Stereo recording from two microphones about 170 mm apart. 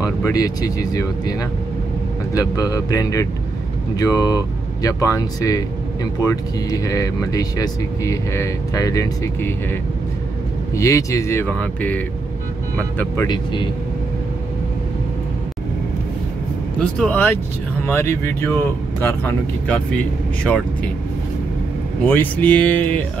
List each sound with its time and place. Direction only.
0.0 s speech: 20° left (ahead or behind)
2.3 s speech: 20° left (ahead or behind)
10.8 s speech: 20° left (ahead or behind)
13.3 s speech: 25° left (ahead or behind)
16.8 s speech: 10° left (ahead or behind)
22.0 s speech: 10° left (ahead or behind)